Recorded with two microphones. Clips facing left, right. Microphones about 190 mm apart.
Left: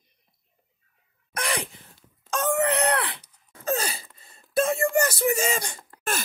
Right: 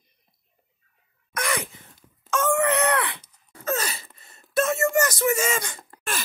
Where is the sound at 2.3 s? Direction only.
35° left (ahead or behind).